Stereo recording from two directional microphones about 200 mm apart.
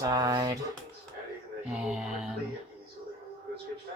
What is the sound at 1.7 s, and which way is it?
Speech, 5° right (ahead or behind).